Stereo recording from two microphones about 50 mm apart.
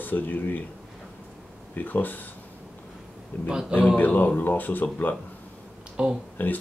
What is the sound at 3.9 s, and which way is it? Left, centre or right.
Speech, left.